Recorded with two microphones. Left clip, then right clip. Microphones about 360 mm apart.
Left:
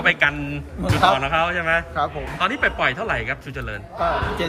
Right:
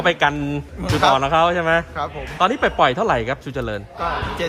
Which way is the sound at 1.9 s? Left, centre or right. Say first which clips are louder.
Even; centre.